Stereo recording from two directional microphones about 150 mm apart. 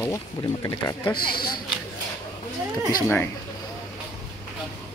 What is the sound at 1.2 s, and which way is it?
Speech, 85° left.